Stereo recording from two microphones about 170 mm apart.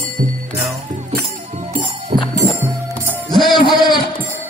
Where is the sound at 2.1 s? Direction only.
45° right (ahead or behind).